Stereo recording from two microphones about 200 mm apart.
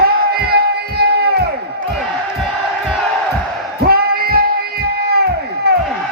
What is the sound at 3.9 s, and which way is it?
Music, 50° right (ahead or behind).